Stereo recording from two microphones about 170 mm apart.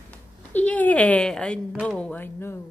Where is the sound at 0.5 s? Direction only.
10° left (ahead or behind).